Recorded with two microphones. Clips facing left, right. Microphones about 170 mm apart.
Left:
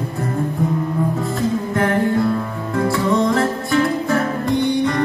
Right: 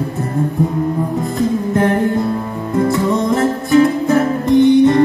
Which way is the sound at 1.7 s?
20° right (ahead or behind).